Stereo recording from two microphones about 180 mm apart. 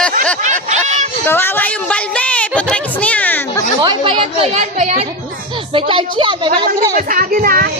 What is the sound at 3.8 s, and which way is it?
Chatter, 25° right (ahead or behind).